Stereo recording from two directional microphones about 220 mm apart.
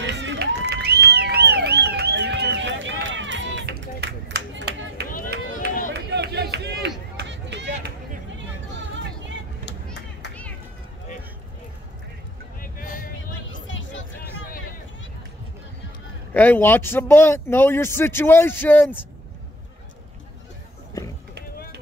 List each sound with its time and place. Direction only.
0.0 s crowd: 50° right (ahead or behind)
5.9 s a sound: 50° right (ahead or behind)
7.2 s run: 55° right (ahead or behind)
12.5 s a sound: 40° left (ahead or behind)
13.5 s music: 60° left (ahead or behind)
16.3 s speech: 10° left (ahead or behind)